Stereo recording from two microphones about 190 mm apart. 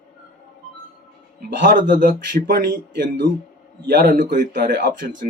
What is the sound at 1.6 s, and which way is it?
A man's voice, 45° right (ahead or behind).